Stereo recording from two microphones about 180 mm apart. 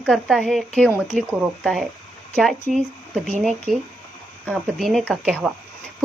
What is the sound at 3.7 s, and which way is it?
Speech, centre (ahead or behind).